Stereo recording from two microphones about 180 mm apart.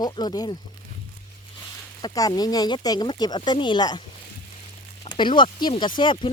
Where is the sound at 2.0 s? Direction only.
20° left (ahead or behind).